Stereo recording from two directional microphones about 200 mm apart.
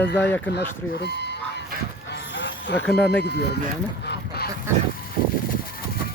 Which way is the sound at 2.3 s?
60° left (ahead or behind).